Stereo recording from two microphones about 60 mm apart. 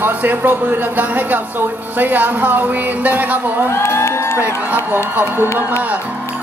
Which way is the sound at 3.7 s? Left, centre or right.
Left.